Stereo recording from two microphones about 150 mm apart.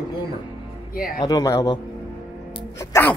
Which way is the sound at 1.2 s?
25° left (ahead or behind).